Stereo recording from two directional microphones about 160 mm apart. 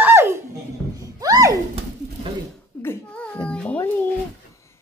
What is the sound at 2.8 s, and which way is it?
A child's voice, 10° left (ahead or behind).